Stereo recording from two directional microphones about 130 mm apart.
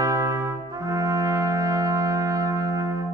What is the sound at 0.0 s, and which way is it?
Brass instrument, 20° right (ahead or behind).